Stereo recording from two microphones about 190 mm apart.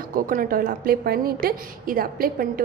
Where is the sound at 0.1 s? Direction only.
45° right (ahead or behind).